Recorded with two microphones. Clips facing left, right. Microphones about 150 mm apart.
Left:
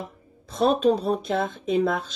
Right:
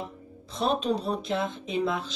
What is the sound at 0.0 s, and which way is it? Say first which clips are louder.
Speech: even; 50° left (ahead or behind).